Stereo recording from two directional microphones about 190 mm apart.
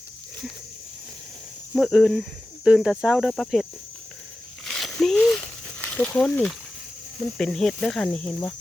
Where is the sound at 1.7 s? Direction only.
Centre (ahead or behind).